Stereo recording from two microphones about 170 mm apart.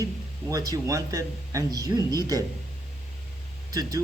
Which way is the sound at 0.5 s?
20° right (ahead or behind).